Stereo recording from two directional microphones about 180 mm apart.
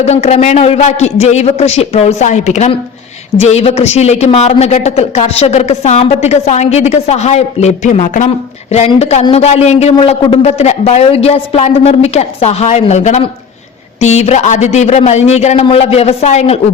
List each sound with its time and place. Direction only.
0.0 s speech: 35° left (ahead or behind)